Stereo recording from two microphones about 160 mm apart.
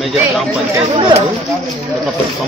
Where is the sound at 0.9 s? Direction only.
30° right (ahead or behind).